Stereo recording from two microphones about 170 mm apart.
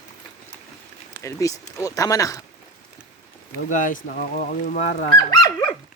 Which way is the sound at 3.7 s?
50° left (ahead or behind).